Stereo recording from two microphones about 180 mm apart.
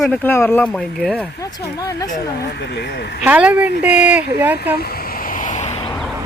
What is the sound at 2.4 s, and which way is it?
Speech, 70° left (ahead or behind).